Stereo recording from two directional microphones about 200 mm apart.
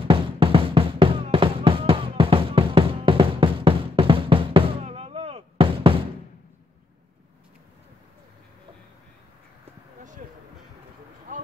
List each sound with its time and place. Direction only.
0.0 s music: 25° right (ahead or behind)